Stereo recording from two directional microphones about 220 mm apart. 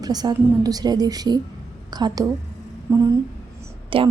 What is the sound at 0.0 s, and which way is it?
A woman's voice, 20° right (ahead or behind).